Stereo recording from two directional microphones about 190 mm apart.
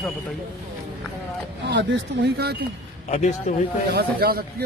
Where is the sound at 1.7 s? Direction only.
65° right (ahead or behind).